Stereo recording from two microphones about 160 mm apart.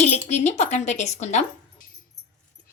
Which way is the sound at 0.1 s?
45° left (ahead or behind).